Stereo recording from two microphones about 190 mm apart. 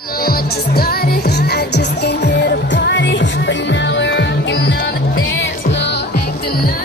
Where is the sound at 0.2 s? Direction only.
50° left (ahead or behind).